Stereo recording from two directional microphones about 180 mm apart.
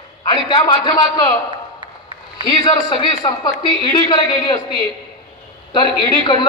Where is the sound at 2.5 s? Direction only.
25° left (ahead or behind).